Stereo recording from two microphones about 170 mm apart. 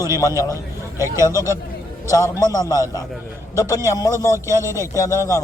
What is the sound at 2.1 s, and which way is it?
A man's voice, 20° left (ahead or behind).